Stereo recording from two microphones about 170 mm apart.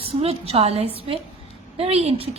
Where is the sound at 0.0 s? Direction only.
35° right (ahead or behind).